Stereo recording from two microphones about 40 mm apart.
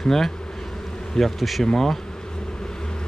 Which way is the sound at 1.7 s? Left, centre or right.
Centre.